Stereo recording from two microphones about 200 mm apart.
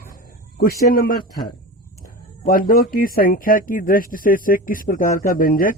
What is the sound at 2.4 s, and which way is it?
Speech, 45° left (ahead or behind).